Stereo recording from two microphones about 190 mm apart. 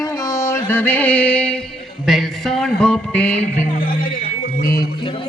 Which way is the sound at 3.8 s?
50° left (ahead or behind).